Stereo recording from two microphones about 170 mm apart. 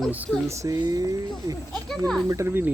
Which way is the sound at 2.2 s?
15° right (ahead or behind).